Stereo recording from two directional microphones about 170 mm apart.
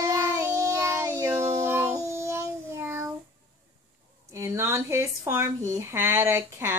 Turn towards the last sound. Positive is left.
turn(degrees=-15)  # may be behind; listen again after turning